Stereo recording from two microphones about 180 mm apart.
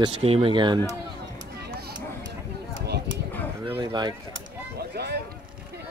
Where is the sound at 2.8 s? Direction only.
65° right (ahead or behind).